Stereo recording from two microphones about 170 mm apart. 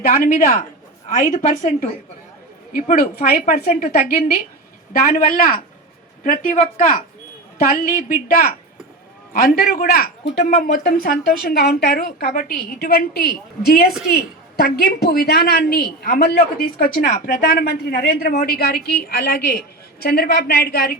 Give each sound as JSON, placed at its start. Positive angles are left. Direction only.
{"t": 0.0, "sound": "a woman's voice", "side_deg": 50}
{"t": 2.7, "sound": "a woman's voice", "side_deg": 55}
{"t": 10.4, "sound": "a woman's voice", "side_deg": 45}
{"t": 10.8, "sound": "a woman's voice", "side_deg": 60}